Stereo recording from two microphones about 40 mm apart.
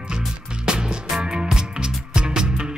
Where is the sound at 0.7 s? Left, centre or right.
Centre.